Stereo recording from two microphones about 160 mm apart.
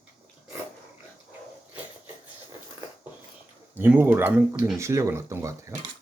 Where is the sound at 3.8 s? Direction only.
15° right (ahead or behind).